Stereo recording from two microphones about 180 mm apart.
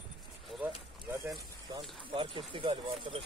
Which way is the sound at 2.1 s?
30° right (ahead or behind).